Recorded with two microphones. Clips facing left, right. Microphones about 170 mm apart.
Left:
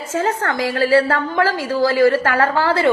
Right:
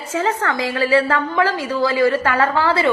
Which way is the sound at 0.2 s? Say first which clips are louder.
Left 1 dB; 45° left (ahead or behind).